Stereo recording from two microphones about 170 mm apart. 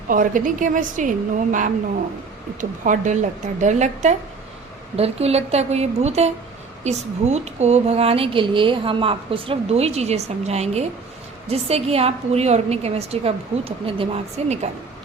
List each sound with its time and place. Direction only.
0.1 s a woman's voice: 50° right (ahead or behind)